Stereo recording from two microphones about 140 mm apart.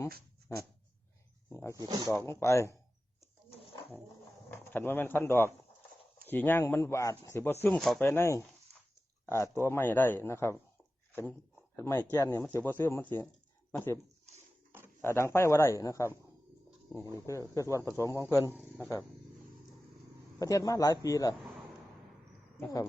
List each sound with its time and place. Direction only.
1.5 s speech: 20° left (ahead or behind)
1.7 s speech: 25° right (ahead or behind)
2.0 s a man's voice: 20° left (ahead or behind)
4.5 s a man's voice: 15° left (ahead or behind)
7.8 s speech: centre (ahead or behind)
8.0 s a man's voice: 20° left (ahead or behind)
15.0 s a man's voice: 20° left (ahead or behind)
17.2 s a man's voice: 25° left (ahead or behind)
20.4 s a man's voice: 25° left (ahead or behind)
22.6 s a man's voice: 20° left (ahead or behind)